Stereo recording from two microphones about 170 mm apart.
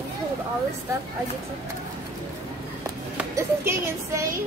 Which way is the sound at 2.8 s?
15° right (ahead or behind).